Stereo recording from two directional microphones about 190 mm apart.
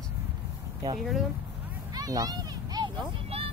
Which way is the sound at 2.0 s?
20° right (ahead or behind).